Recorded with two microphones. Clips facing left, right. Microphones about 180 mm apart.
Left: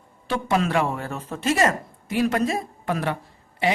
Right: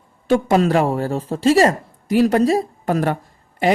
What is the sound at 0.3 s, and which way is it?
A man's voice, 45° right (ahead or behind).